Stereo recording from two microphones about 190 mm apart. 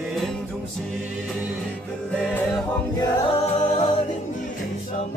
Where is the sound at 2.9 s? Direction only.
25° left (ahead or behind).